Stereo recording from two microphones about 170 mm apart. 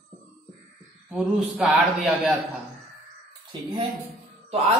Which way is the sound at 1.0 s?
5° right (ahead or behind).